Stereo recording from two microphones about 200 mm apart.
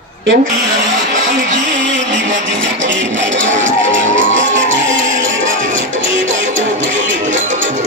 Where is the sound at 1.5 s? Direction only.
65° right (ahead or behind).